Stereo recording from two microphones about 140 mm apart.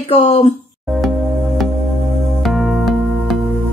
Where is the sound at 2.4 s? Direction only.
Centre (ahead or behind).